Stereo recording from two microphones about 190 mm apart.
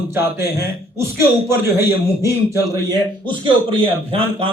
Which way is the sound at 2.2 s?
15° right (ahead or behind).